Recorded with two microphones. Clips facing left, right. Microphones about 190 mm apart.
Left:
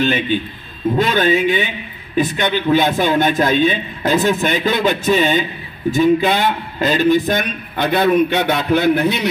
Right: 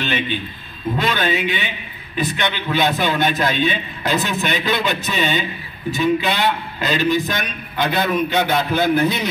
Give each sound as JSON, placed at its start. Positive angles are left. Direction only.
{"t": 0.9, "sound": "a man's voice", "side_deg": 45}